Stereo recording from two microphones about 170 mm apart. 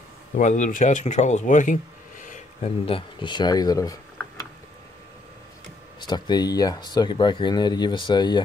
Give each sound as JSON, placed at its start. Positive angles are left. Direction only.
{"t": 0.4, "sound": "speech", "side_deg": 45}
{"t": 2.8, "sound": "speech", "side_deg": 30}
{"t": 5.9, "sound": "speech", "side_deg": 25}